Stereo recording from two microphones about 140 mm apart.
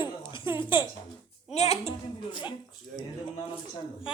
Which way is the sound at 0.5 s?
35° left (ahead or behind).